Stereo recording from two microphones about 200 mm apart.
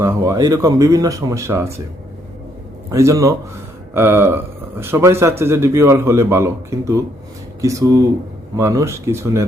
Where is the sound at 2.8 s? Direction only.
15° right (ahead or behind).